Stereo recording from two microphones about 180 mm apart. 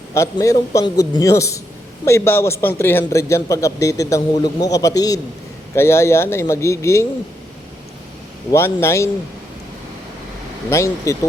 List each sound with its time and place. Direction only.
0.1 s a man's voice: 15° left (ahead or behind)
8.5 s a man's voice: 15° left (ahead or behind)
10.7 s a man's voice: 15° left (ahead or behind)